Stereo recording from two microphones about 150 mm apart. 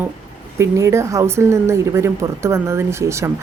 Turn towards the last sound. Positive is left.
turn(degrees=-20)  # may be behind; listen again after turning